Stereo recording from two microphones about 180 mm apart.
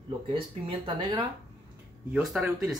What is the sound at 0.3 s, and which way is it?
Speech, 25° right (ahead or behind).